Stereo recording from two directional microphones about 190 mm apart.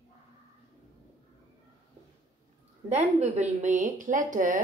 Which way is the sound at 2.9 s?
35° right (ahead or behind).